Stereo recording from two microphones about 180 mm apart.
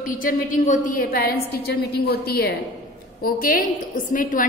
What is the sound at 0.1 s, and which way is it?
A woman's voice, 50° left (ahead or behind).